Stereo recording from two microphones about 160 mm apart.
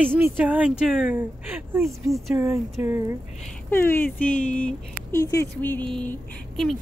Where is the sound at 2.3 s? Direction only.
15° right (ahead or behind).